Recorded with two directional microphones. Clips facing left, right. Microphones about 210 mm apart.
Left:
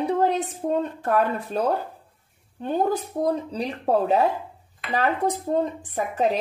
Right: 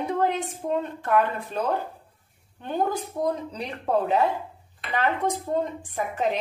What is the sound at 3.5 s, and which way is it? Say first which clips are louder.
Speech: left 3 dB; 35° left (ahead or behind).